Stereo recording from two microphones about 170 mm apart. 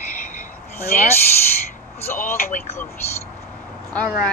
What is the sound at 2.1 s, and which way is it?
Speech, 15° left (ahead or behind).